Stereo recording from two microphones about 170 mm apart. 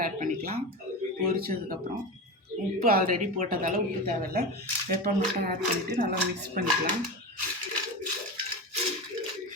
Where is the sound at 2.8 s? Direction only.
55° right (ahead or behind).